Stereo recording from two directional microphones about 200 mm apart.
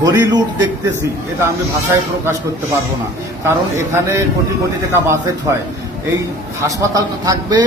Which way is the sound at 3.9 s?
15° right (ahead or behind).